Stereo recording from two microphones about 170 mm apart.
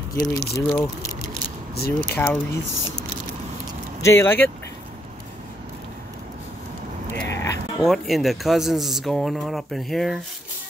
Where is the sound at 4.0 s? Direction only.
15° left (ahead or behind).